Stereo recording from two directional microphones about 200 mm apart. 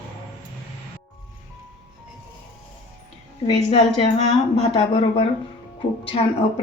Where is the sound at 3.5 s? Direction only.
30° left (ahead or behind).